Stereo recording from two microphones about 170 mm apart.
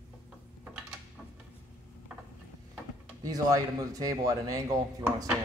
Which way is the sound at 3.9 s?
20° right (ahead or behind).